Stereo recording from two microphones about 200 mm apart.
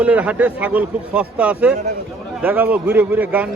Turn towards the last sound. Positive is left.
turn(degrees=-10)  # may be behind; listen again after turning